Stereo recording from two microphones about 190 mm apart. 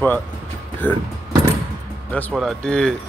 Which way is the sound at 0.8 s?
5° left (ahead or behind).